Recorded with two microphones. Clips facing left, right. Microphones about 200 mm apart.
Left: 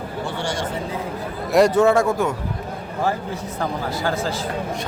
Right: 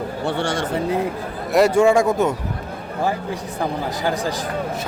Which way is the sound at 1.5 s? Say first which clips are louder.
Right 1 dB; 10° right (ahead or behind).